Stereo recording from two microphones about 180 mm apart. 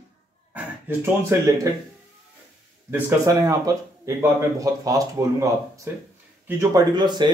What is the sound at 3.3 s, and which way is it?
Speech, 20° right (ahead or behind).